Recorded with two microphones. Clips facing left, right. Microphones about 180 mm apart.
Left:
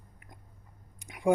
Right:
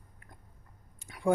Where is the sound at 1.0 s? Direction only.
15° left (ahead or behind).